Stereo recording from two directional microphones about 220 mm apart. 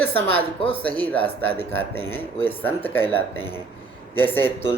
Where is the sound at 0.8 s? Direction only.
5° left (ahead or behind).